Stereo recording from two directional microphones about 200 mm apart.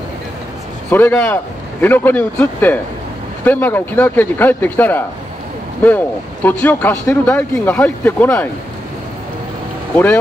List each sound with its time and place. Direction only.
0.8 s speech: 10° left (ahead or behind)